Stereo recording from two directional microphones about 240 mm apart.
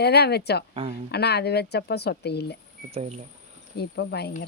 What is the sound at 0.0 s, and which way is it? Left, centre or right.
Speech, left.